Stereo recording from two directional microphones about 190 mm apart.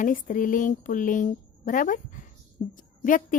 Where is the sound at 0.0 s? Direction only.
45° left (ahead or behind).